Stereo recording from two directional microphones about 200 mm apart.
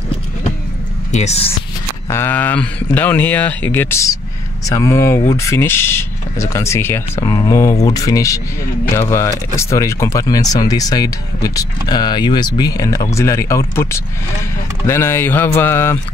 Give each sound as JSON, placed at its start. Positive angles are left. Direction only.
{"t": 1.1, "sound": "speech", "side_deg": 35}
{"t": 2.0, "sound": "speech", "side_deg": 10}